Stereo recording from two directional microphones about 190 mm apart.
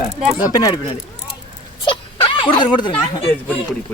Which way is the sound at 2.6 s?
25° left (ahead or behind).